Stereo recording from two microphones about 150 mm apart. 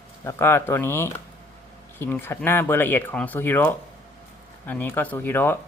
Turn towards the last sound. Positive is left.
turn(degrees=15)  # may be behind; listen again after turning